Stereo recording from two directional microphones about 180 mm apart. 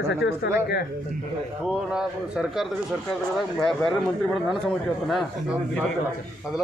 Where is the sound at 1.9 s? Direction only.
5° right (ahead or behind).